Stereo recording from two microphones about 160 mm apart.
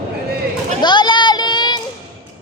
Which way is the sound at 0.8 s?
25° left (ahead or behind).